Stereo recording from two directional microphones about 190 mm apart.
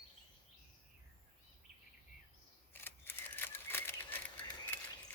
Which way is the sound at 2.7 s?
10° left (ahead or behind).